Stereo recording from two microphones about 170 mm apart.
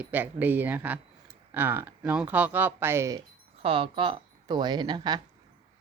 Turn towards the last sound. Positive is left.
turn(degrees=-25)  # may be behind; listen again after turning